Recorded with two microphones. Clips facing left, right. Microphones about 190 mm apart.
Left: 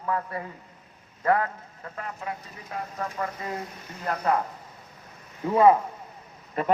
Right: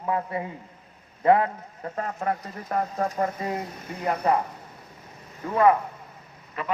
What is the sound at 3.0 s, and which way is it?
Speech, 30° right (ahead or behind).